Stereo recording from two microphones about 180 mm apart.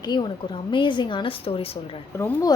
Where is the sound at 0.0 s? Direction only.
25° left (ahead or behind).